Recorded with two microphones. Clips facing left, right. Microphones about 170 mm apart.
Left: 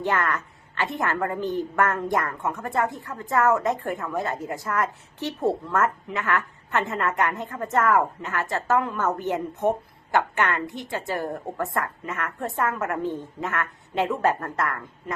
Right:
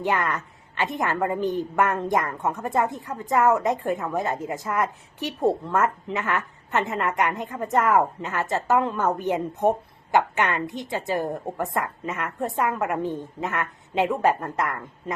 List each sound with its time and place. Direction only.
0.0 s a woman's voice: 15° right (ahead or behind)